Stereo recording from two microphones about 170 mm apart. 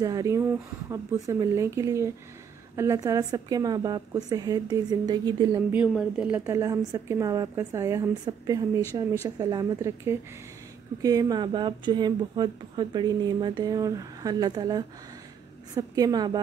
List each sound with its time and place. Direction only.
0.0 s speech: 20° right (ahead or behind)
5.7 s a woman's voice: 5° right (ahead or behind); by 16.3 s 25° right (ahead or behind)